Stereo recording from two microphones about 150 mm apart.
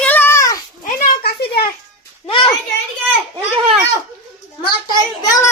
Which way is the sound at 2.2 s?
35° left (ahead or behind).